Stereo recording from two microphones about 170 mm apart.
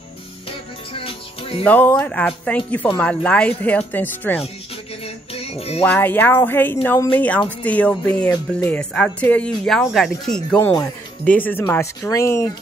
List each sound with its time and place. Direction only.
0.5 s music: 35° left (ahead or behind)
1.6 s a woman's voice: 10° left (ahead or behind)
5.0 s music: 35° left (ahead or behind)
5.9 s a woman's voice: 10° left (ahead or behind)